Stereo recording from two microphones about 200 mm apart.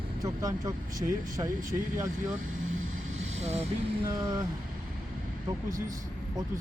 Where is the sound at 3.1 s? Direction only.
30° right (ahead or behind).